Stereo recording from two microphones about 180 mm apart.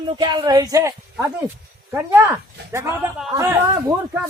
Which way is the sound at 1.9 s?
15° right (ahead or behind).